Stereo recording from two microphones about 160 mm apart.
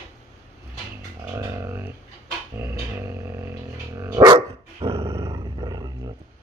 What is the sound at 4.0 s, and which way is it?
Dog, 25° right (ahead or behind).